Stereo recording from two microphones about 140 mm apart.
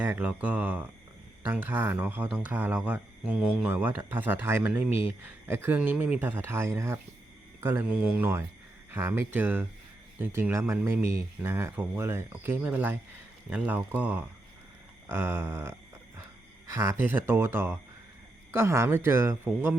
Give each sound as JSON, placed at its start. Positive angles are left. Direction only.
{"t": 0.0, "sound": "speech", "side_deg": -15}